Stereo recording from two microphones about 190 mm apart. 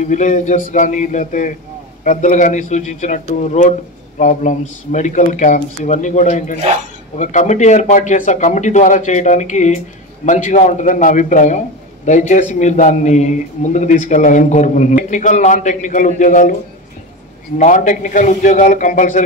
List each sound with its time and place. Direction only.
0.0 s a man's voice: 40° left (ahead or behind)
17.6 s a man's voice: 40° left (ahead or behind)